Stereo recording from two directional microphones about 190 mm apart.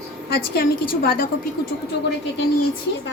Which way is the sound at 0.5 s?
50° left (ahead or behind).